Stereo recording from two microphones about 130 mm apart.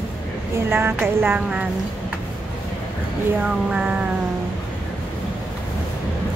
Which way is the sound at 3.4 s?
10° right (ahead or behind).